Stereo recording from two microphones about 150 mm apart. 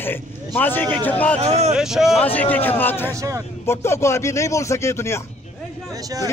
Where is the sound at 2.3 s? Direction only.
10° left (ahead or behind).